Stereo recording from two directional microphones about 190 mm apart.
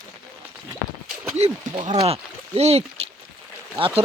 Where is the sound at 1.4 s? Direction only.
35° right (ahead or behind).